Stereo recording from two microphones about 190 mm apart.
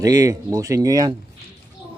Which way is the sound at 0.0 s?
20° right (ahead or behind).